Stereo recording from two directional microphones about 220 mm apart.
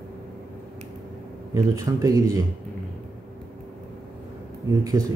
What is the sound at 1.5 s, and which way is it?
Speech, 15° right (ahead or behind).